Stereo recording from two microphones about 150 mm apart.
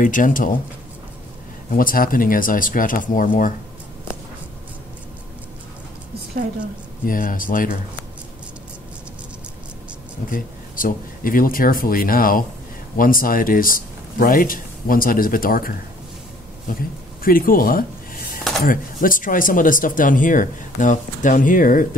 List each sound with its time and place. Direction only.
0.0 s speech: 65° left (ahead or behind)
1.7 s speech: 70° left (ahead or behind)
7.1 s speech: 70° left (ahead or behind)
10.3 s speech: 70° left (ahead or behind)
16.6 s a sound: 70° left (ahead or behind)
18.6 s speech: 70° left (ahead or behind)